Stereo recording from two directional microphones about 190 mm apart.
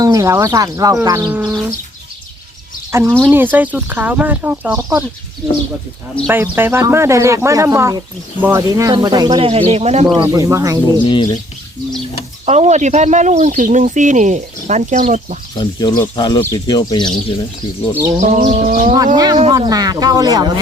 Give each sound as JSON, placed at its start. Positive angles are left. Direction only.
{"t": 0.0, "sound": "speech", "side_deg": -15}
{"t": 2.9, "sound": "speech", "side_deg": -15}
{"t": 6.2, "sound": "speech", "side_deg": -10}
{"t": 10.2, "sound": "speech", "side_deg": -15}
{"t": 11.1, "sound": "speech", "side_deg": 25}
{"t": 12.5, "sound": "speech", "side_deg": -35}
{"t": 15.5, "sound": "speech", "side_deg": 20}
{"t": 18.2, "sound": "speech", "side_deg": -35}
{"t": 19.1, "sound": "speech", "side_deg": -20}